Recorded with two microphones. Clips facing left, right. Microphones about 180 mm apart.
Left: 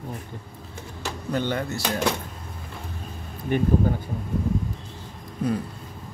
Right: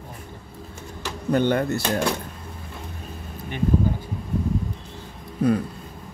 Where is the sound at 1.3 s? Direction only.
55° right (ahead or behind).